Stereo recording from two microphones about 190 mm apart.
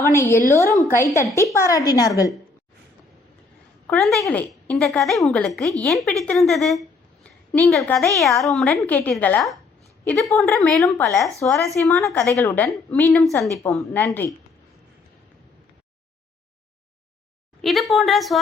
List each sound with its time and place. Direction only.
0.1 s a woman's voice: 15° left (ahead or behind)
3.8 s a woman's voice: centre (ahead or behind)
7.9 s a woman's voice: centre (ahead or behind)
11.0 s a woman's voice: 15° left (ahead or behind)
11.4 s a woman's voice: centre (ahead or behind)
12.3 s a woman's voice: 15° left (ahead or behind)
17.6 s a woman's voice: centre (ahead or behind)